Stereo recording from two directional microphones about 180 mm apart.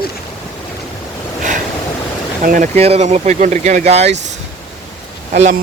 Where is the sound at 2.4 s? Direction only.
50° right (ahead or behind).